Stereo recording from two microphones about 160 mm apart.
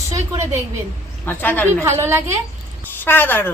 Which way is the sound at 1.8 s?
15° right (ahead or behind).